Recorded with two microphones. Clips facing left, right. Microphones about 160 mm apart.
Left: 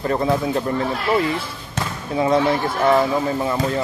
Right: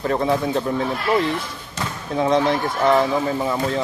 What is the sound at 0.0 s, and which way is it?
Speech, centre (ahead or behind).